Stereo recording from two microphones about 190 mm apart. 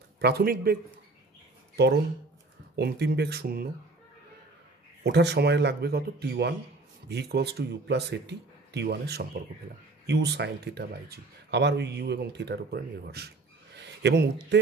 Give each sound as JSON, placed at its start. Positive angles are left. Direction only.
{"t": 0.2, "sound": "speech", "side_deg": -55}
{"t": 1.8, "sound": "speech", "side_deg": -60}
{"t": 5.0, "sound": "speech", "side_deg": -65}